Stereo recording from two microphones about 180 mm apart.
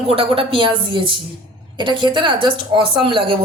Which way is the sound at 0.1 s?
30° right (ahead or behind).